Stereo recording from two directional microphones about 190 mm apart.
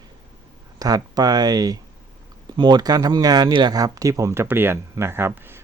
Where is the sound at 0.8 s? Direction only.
20° right (ahead or behind).